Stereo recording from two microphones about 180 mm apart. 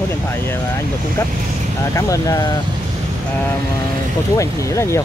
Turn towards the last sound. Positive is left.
turn(degrees=15)  # may be behind; listen again after turning